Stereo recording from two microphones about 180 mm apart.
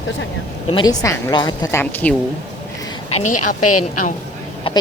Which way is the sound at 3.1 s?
40° left (ahead or behind).